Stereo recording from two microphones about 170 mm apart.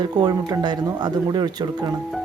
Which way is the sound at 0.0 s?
25° right (ahead or behind).